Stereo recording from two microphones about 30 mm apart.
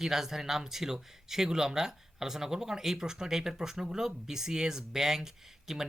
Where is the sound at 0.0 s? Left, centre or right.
Centre.